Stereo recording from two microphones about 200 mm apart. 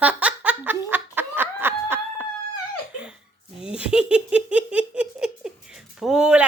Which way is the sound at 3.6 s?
5° right (ahead or behind).